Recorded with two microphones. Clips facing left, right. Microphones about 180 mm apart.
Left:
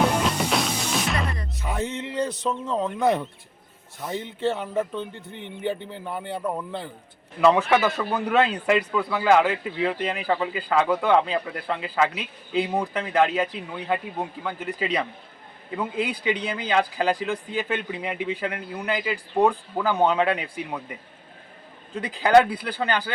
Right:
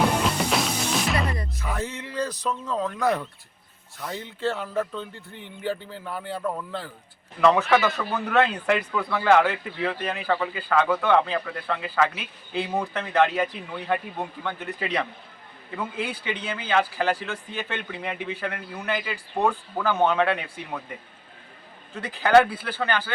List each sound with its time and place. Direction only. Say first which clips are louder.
0.0 s music: left 1 dB; centre (ahead or behind)
1.6 s a sound: left 4 dB; 20° left (ahead or behind)
4.0 s speech: left 2 dB; 20° left (ahead or behind)
16.3 s speech: left 4 dB; 35° left (ahead or behind)
16.6 s speech: left 1 dB; 15° left (ahead or behind)
22.0 s speech: left 1 dB; 15° left (ahead or behind)